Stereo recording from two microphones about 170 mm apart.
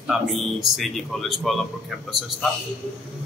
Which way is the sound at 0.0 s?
Centre (ahead or behind).